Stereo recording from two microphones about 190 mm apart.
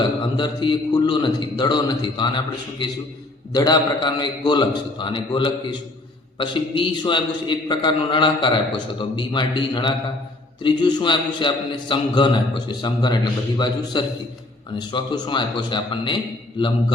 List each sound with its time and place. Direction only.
0.0 s a man's voice: 25° left (ahead or behind)